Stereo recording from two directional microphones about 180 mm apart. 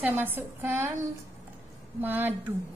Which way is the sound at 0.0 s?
10° right (ahead or behind).